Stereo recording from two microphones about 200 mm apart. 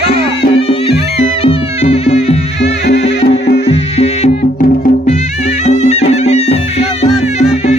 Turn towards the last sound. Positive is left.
turn(degrees=30)  # may be behind; listen again after turning